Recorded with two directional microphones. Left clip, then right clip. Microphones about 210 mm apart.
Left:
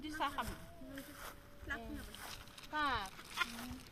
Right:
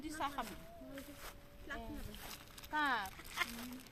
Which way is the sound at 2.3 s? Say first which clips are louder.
Right 2 dB; 40° right (ahead or behind).